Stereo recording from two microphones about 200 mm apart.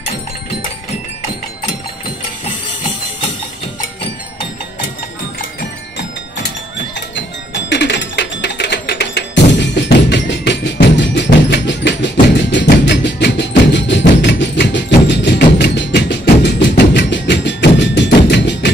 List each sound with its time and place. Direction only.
5.9 s music: 60° left (ahead or behind)